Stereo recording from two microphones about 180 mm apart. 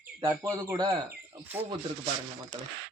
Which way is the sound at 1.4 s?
10° right (ahead or behind).